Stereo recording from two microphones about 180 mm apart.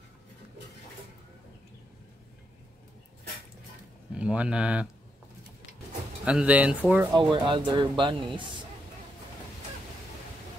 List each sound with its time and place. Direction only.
4.1 s speech: 5° right (ahead or behind)
6.2 s speech: 5° right (ahead or behind)
7.2 s speech: 25° right (ahead or behind)